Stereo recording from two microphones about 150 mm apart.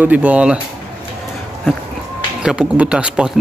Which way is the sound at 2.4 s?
10° right (ahead or behind).